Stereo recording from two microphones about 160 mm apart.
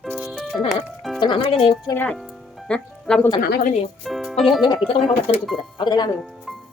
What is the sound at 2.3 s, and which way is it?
Music, centre (ahead or behind).